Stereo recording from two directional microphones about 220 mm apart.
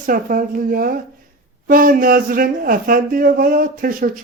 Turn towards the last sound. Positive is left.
turn(degrees=-40)  # may be behind; listen again after turning